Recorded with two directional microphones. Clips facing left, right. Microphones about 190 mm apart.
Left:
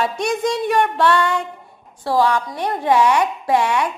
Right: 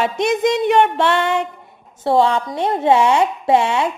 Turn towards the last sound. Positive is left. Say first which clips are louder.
# right 2 dB
turn(degrees=-25)  # may be behind; listen again after turning